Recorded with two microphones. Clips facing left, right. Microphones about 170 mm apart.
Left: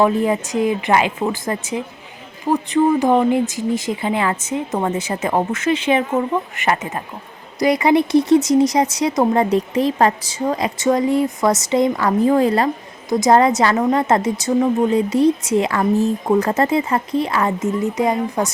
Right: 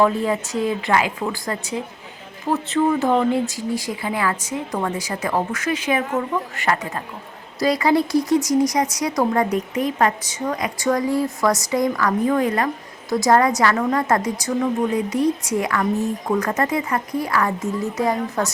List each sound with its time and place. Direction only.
0.0 s speech: 20° left (ahead or behind)
13.1 s speech: 20° left (ahead or behind)